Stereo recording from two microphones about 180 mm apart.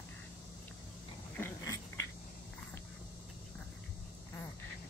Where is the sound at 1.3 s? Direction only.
15° left (ahead or behind).